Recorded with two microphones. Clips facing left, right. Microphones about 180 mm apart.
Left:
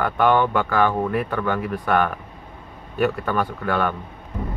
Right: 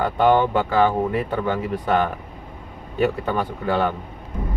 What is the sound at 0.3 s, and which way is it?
Speech, 20° right (ahead or behind).